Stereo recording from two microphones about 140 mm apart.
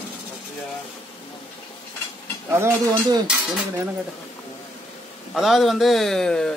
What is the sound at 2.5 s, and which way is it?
Stir, 20° right (ahead or behind).